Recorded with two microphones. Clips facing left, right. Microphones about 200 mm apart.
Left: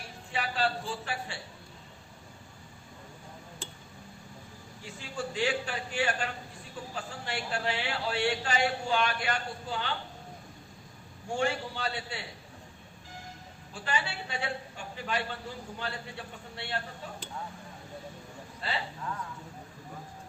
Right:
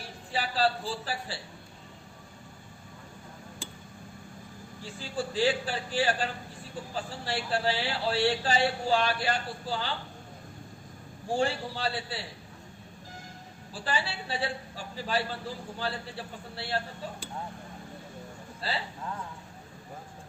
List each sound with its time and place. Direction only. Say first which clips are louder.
0.3 s a man's voice: right 3 dB; 35° right (ahead or behind)
4.8 s a man's voice: right 3 dB; 30° right (ahead or behind)
11.3 s a man's voice: right 2 dB; 30° right (ahead or behind)
13.7 s a man's voice: right 1 dB; 35° right (ahead or behind)
18.6 s a man's voice: right 2 dB; 35° right (ahead or behind)